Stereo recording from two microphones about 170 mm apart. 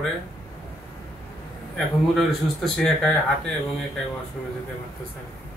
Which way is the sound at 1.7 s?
Centre (ahead or behind).